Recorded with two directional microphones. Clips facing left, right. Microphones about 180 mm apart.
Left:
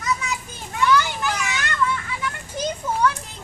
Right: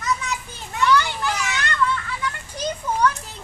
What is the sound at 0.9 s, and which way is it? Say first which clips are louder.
Children playing: even; 5° left (ahead or behind).